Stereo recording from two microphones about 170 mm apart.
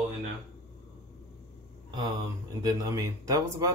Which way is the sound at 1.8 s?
30° right (ahead or behind).